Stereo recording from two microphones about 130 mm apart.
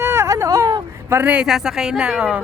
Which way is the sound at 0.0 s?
20° right (ahead or behind).